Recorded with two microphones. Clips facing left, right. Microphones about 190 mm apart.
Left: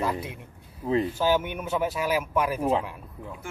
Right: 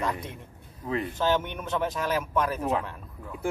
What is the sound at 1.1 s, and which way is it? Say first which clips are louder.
Speech: left 2 dB; 10° left (ahead or behind).